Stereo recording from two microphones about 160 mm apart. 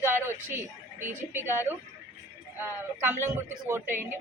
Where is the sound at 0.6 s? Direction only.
50° right (ahead or behind).